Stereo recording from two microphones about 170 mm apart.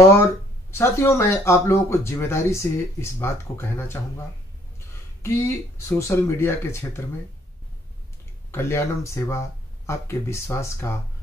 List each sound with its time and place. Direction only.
0.1 s speech: 15° left (ahead or behind)
8.5 s speech: 15° left (ahead or behind)